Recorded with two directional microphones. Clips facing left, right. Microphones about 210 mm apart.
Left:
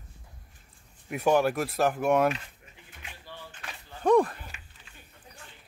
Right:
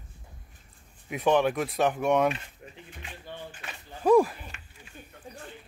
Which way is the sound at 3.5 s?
5° right (ahead or behind).